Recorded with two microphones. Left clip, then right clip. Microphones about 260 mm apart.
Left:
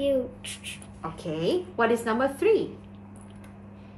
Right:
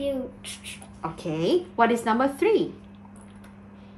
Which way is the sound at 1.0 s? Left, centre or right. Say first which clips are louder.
Right 2 dB; right.